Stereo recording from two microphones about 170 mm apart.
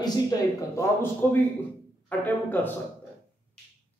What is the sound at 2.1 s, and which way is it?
Speech, 10° left (ahead or behind).